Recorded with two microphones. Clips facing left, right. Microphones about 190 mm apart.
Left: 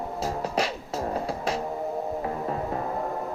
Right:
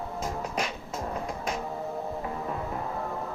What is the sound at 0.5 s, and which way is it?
Music, 35° left (ahead or behind).